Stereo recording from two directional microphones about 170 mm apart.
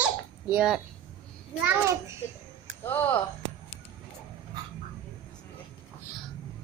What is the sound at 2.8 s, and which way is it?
Speech, 10° left (ahead or behind).